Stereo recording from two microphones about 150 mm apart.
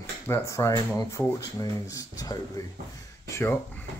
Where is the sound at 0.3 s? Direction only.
20° left (ahead or behind).